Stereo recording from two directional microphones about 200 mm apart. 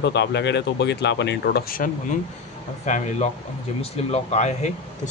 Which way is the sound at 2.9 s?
35° left (ahead or behind).